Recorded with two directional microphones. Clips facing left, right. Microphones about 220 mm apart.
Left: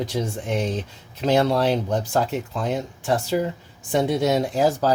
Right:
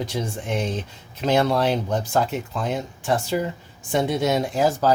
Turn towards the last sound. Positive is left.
turn(degrees=35)  # may be behind; listen again after turning